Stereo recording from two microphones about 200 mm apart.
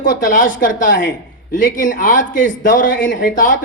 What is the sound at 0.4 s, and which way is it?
A man's voice, 40° left (ahead or behind).